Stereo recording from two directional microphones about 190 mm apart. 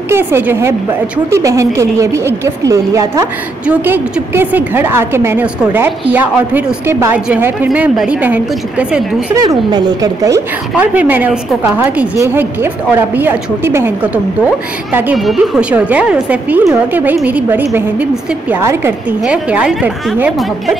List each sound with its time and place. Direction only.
0.1 s a woman's voice: 10° right (ahead or behind)
9.3 s a woman's voice: 20° right (ahead or behind); by 20.7 s 5° right (ahead or behind)